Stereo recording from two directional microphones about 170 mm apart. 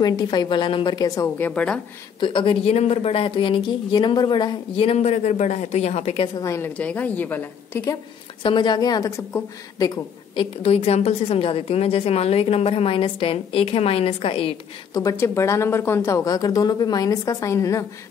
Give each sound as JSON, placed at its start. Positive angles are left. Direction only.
{"t": 0.0, "sound": "a woman's voice", "side_deg": 25}
{"t": 1.5, "sound": "speech", "side_deg": 5}
{"t": 2.1, "sound": "a woman's voice", "side_deg": 30}
{"t": 6.4, "sound": "a woman's voice", "side_deg": 15}
{"t": 10.6, "sound": "a woman's voice", "side_deg": 35}
{"t": 15.0, "sound": "a woman's voice", "side_deg": 20}